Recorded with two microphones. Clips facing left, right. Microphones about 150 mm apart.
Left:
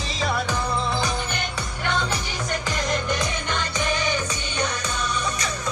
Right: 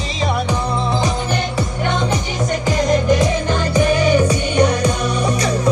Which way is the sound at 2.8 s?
35° right (ahead or behind).